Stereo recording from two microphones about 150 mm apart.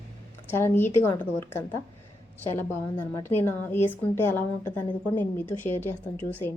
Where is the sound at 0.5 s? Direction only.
15° left (ahead or behind).